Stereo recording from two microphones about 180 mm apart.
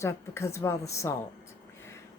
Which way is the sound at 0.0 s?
15° left (ahead or behind).